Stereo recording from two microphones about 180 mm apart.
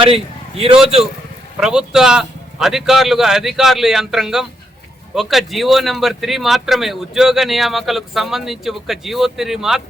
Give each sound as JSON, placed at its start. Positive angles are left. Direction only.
{"t": 0.0, "sound": "a man's voice", "side_deg": -30}
{"t": 1.5, "sound": "speech", "side_deg": -5}